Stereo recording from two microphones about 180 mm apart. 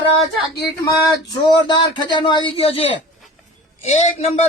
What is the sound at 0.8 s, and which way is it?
Speech, 20° left (ahead or behind).